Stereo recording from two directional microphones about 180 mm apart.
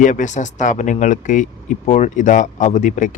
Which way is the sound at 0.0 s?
45° left (ahead or behind).